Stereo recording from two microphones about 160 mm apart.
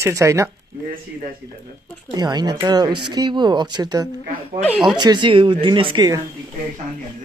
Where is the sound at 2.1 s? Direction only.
25° right (ahead or behind).